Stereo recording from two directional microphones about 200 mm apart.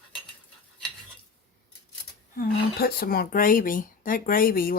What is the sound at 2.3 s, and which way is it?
Speech, 50° left (ahead or behind).